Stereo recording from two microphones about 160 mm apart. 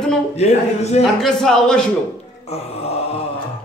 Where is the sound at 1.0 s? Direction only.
5° left (ahead or behind).